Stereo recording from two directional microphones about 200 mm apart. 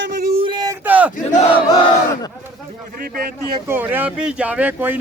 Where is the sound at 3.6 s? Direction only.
10° right (ahead or behind).